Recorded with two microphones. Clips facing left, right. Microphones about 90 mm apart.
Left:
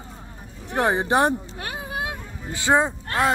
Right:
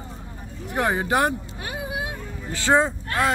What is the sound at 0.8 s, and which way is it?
Speech, 25° left (ahead or behind).